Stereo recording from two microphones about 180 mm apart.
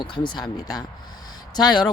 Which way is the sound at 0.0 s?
25° left (ahead or behind).